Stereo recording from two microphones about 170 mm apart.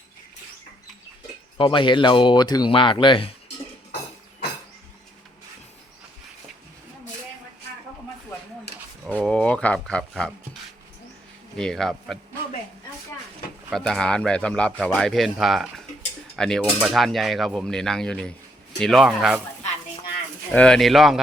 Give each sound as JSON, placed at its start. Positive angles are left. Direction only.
{"t": 1.5, "sound": "speech", "side_deg": 30}
{"t": 9.0, "sound": "a sound", "side_deg": 5}
{"t": 11.5, "sound": "a man's voice", "side_deg": 5}
{"t": 13.7, "sound": "a man's voice", "side_deg": 0}
{"t": 20.5, "sound": "a man's voice", "side_deg": 5}